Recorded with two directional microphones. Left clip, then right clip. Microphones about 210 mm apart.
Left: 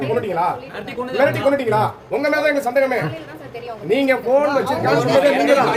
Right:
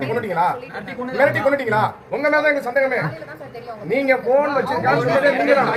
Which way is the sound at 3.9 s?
50° left (ahead or behind).